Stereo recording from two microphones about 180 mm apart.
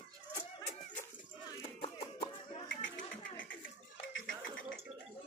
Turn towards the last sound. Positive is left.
turn(degrees=90)